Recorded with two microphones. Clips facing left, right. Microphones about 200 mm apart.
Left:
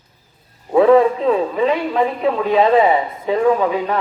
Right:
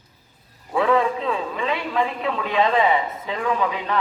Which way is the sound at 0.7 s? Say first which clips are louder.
Left 9 dB; 40° left (ahead or behind).